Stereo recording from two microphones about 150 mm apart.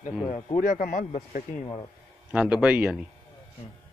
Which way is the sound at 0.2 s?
45° left (ahead or behind).